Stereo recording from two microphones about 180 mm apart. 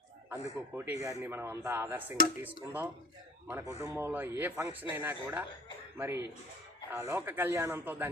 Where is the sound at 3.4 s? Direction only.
15° right (ahead or behind).